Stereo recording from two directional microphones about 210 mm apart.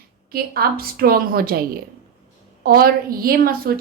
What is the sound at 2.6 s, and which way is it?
A woman's voice, 45° right (ahead or behind).